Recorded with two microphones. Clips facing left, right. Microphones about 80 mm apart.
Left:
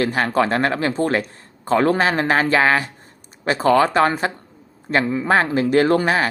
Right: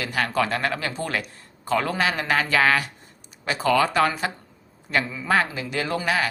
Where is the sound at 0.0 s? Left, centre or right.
Left.